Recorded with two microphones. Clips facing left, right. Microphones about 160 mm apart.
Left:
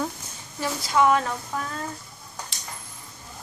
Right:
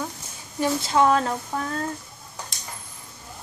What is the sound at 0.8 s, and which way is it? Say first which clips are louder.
Speech: even; 30° right (ahead or behind).